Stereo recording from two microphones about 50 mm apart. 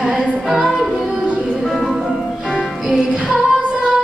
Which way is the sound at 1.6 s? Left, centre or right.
Centre.